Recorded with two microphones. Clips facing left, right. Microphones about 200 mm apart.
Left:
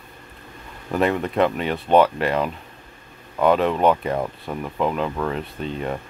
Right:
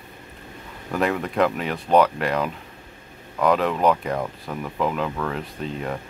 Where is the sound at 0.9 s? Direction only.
Centre (ahead or behind).